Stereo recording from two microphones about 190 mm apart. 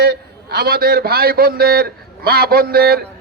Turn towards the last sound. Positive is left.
turn(degrees=-55)  # may be behind; listen again after turning